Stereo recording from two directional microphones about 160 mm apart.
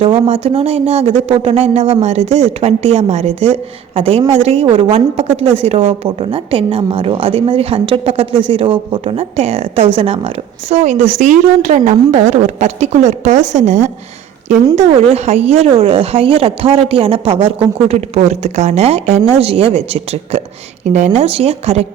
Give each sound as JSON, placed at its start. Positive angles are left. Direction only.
{"t": 0.0, "sound": "a woman's voice", "side_deg": -35}